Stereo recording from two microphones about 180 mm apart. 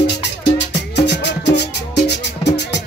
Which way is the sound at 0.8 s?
70° left (ahead or behind).